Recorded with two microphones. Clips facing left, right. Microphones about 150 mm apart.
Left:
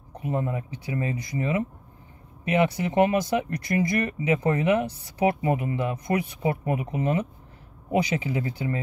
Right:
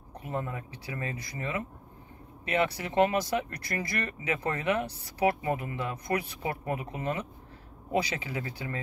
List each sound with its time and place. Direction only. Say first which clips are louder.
0.2 s speech: left 6 dB; 20° left (ahead or behind)